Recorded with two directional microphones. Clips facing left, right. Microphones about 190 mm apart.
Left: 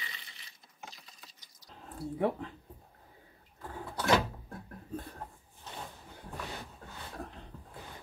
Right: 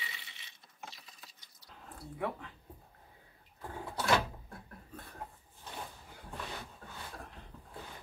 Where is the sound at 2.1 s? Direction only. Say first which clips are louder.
Left 7 dB; 30° left (ahead or behind).